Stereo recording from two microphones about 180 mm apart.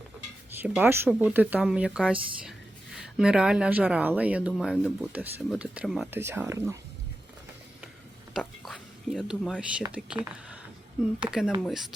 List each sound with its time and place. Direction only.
0.6 s speech: 10° right (ahead or behind)
8.4 s whispering: centre (ahead or behind)
9.9 s speech: 5° right (ahead or behind)